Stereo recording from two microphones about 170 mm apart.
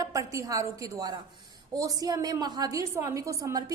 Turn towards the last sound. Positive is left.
turn(degrees=-20)  # may be behind; listen again after turning